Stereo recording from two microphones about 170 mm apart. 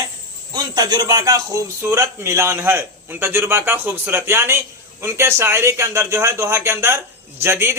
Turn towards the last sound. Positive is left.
turn(degrees=-15)  # may be behind; listen again after turning